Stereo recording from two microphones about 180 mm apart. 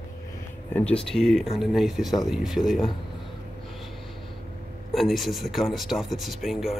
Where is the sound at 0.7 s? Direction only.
5° left (ahead or behind).